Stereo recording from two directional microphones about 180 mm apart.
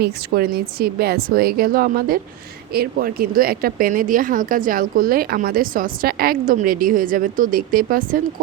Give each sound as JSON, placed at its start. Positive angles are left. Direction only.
{"t": 0.0, "sound": "a woman's voice", "side_deg": -60}